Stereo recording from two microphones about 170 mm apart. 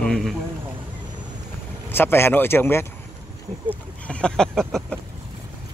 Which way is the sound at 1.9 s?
15° left (ahead or behind).